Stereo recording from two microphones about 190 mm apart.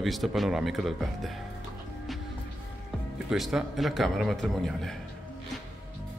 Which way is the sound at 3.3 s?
Centre (ahead or behind).